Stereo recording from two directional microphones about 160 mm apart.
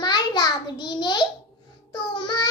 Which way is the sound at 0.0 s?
25° left (ahead or behind).